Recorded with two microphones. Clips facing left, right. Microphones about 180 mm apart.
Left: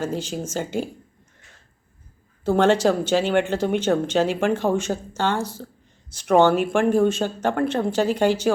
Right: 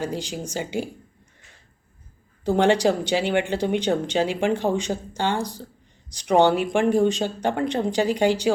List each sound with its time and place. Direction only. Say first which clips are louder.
0.0 s speech: left 2 dB; 15° right (ahead or behind)
2.4 s speech: left 1 dB; 15° right (ahead or behind)